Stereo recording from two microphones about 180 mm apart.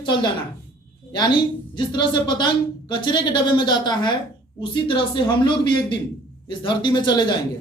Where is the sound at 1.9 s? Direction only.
25° left (ahead or behind).